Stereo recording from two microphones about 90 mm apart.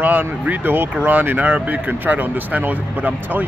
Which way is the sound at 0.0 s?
20° right (ahead or behind).